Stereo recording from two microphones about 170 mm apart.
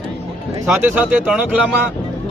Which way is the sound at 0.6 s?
10° right (ahead or behind).